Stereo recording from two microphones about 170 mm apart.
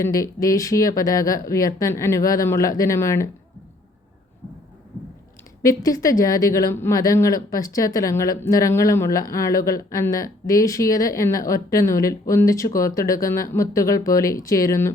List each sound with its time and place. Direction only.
0.0 s speech: 20° left (ahead or behind)
5.6 s speech: 20° left (ahead or behind)